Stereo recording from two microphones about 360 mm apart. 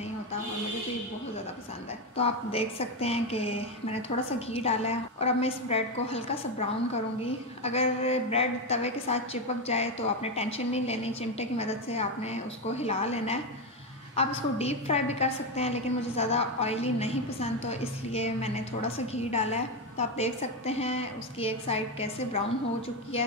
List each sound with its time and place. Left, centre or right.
2.1 s a woman's voice: centre
7.6 s a woman's voice: centre